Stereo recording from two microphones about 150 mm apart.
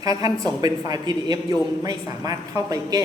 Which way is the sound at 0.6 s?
25° right (ahead or behind).